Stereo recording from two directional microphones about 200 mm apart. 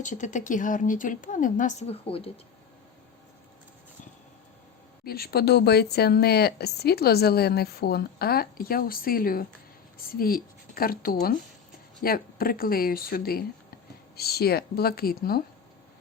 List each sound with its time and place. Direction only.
0.0 s a woman's voice: 40° left (ahead or behind)
5.0 s speech: 50° left (ahead or behind)